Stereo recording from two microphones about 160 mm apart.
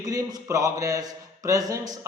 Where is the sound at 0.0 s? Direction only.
25° right (ahead or behind).